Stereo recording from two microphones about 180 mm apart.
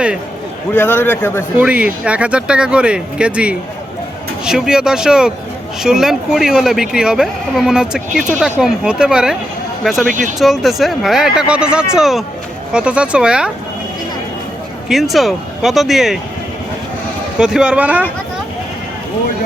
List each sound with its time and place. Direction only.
0.7 s a man's voice: 10° left (ahead or behind)
1.5 s speech: 5° right (ahead or behind)
10.1 s speech: 45° right (ahead or behind)
10.3 s speech: centre (ahead or behind)
14.8 s speech: centre (ahead or behind)
17.3 s speech: 5° right (ahead or behind)